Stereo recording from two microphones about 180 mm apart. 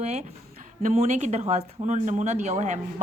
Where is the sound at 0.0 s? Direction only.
40° right (ahead or behind).